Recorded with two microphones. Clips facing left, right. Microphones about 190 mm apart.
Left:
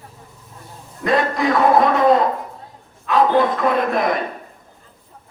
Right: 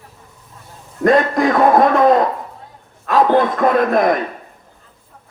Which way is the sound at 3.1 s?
50° right (ahead or behind).